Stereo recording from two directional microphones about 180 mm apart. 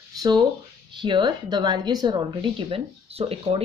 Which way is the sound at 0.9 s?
25° right (ahead or behind).